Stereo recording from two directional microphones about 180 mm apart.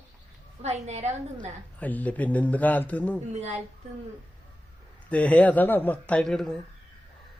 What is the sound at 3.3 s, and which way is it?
Speech, 35° right (ahead or behind).